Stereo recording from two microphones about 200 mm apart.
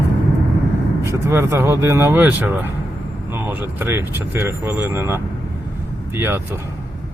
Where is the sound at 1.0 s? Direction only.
15° right (ahead or behind).